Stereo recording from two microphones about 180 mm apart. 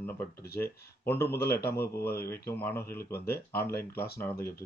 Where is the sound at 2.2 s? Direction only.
15° left (ahead or behind).